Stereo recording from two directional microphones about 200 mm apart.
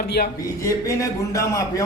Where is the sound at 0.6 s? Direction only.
15° left (ahead or behind).